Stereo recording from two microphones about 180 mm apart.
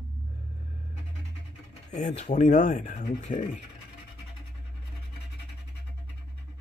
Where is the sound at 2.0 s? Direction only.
45° left (ahead or behind).